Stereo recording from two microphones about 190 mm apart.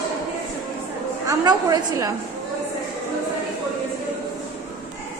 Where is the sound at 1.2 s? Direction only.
20° right (ahead or behind).